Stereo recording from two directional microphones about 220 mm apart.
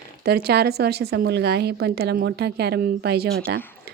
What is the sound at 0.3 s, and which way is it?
Speech, 45° right (ahead or behind).